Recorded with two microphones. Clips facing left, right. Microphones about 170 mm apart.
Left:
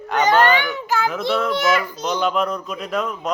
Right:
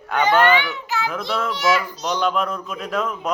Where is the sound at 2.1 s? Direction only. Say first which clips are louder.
Left 1 dB; centre (ahead or behind).